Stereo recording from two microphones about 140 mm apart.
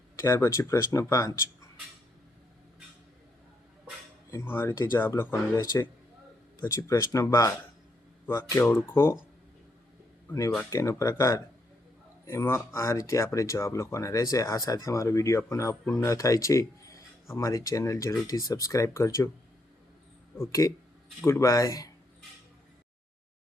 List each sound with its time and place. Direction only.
0.2 s speech: 20° left (ahead or behind)
4.3 s speech: 20° left (ahead or behind)
10.6 s speech: 20° left (ahead or behind)
20.3 s speech: 20° left (ahead or behind)